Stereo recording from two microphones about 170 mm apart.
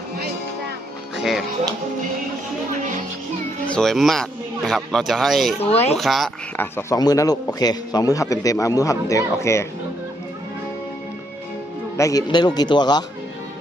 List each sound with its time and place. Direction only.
1.1 s music: centre (ahead or behind)
3.7 s speech: 5° left (ahead or behind)
5.5 s speech: 35° left (ahead or behind)
5.9 s speech: centre (ahead or behind)
6.6 s a man's voice: 15° left (ahead or behind)
11.9 s a man's voice: 20° left (ahead or behind)